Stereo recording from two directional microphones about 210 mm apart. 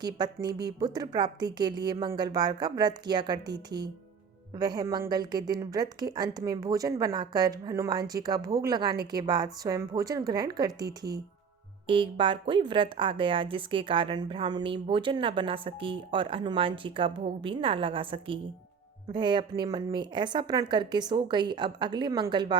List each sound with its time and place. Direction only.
0.0 s a woman's voice: 20° right (ahead or behind)